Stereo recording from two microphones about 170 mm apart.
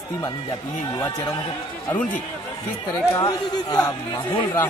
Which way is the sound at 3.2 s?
20° left (ahead or behind).